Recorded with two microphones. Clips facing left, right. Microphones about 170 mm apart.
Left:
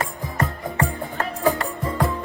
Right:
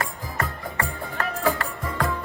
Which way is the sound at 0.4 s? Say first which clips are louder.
Left 8 dB; 20° left (ahead or behind).